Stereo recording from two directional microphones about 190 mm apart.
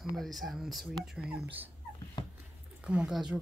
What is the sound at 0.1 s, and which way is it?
Speech, centre (ahead or behind).